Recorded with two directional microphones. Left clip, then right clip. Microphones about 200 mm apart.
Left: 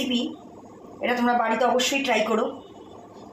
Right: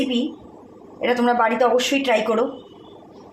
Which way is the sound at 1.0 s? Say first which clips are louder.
Right 4 dB; 60° right (ahead or behind).